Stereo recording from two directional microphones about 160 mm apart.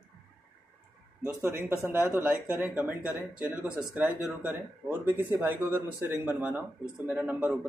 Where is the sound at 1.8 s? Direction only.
10° right (ahead or behind).